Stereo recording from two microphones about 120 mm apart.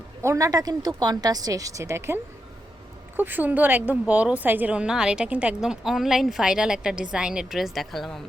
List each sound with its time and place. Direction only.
0.2 s a woman's voice: 25° right (ahead or behind)
3.2 s a woman's voice: 15° right (ahead or behind); by 8.2 s centre (ahead or behind)